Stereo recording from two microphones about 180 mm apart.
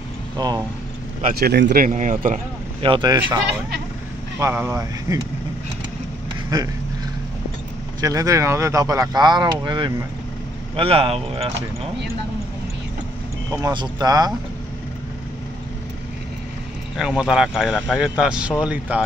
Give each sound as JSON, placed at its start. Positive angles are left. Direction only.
{"t": 0.4, "sound": "speech", "side_deg": -25}
{"t": 1.2, "sound": "speech", "side_deg": -60}
{"t": 1.9, "sound": "speech", "side_deg": -45}
{"t": 2.8, "sound": "speech", "side_deg": -25}
{"t": 4.4, "sound": "speech", "side_deg": -15}
{"t": 8.0, "sound": "speech", "side_deg": -20}
{"t": 13.5, "sound": "speech", "side_deg": -20}
{"t": 16.9, "sound": "speech", "side_deg": -5}